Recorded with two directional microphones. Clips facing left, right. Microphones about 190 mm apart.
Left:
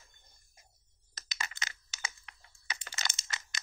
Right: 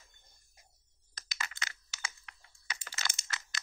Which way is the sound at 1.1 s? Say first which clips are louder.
Left 1 dB; 20° left (ahead or behind).